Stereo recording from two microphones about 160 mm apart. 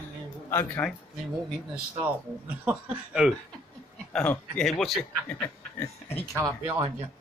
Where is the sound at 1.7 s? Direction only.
10° right (ahead or behind).